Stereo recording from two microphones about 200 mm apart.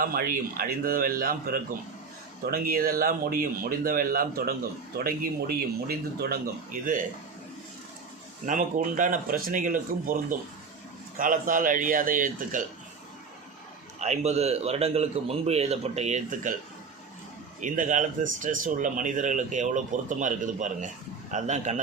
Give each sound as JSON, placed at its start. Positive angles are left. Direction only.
{"t": 0.0, "sound": "speech", "side_deg": -45}
{"t": 8.4, "sound": "speech", "side_deg": -40}
{"t": 14.0, "sound": "speech", "side_deg": -35}
{"t": 17.6, "sound": "speech", "side_deg": -40}